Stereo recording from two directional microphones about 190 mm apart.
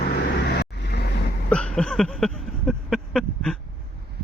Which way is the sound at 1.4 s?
5° left (ahead or behind).